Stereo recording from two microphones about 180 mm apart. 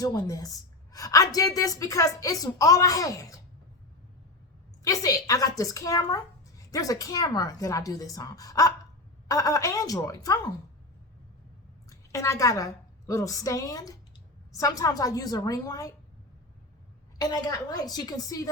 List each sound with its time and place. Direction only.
0.0 s speech: 20° left (ahead or behind)
4.8 s speech: 20° left (ahead or behind)
11.9 s a woman's voice: 15° left (ahead or behind)
17.2 s speech: 20° left (ahead or behind)